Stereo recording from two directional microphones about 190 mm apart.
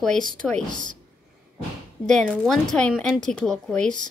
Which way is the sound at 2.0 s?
5° left (ahead or behind).